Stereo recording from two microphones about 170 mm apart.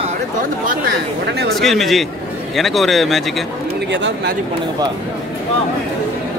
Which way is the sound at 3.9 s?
90° right.